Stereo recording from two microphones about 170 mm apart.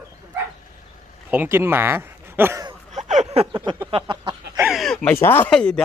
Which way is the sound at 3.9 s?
30° right (ahead or behind).